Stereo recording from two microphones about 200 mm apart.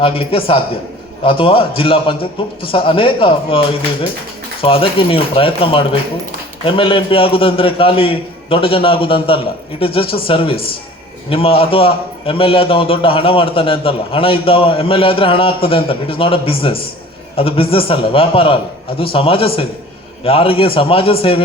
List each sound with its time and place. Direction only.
0.0 s a man's voice: 25° left (ahead or behind)